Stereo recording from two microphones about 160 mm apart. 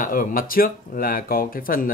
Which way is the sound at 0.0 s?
60° left (ahead or behind).